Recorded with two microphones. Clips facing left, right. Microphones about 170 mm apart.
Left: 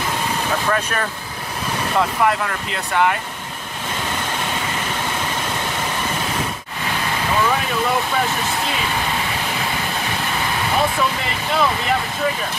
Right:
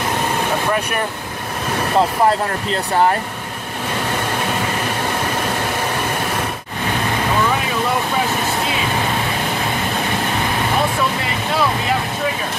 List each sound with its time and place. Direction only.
0.7 s speech: 15° right (ahead or behind)
2.0 s speech: 35° right (ahead or behind)